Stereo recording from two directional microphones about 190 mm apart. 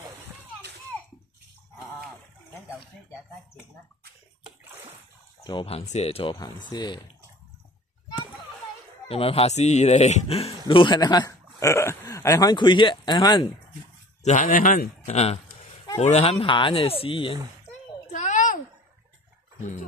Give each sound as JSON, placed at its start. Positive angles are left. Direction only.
{"t": 5.4, "sound": "speech", "side_deg": 25}
{"t": 9.0, "sound": "a man's voice", "side_deg": 30}
{"t": 14.2, "sound": "speech", "side_deg": 45}
{"t": 18.1, "sound": "a sound", "side_deg": 40}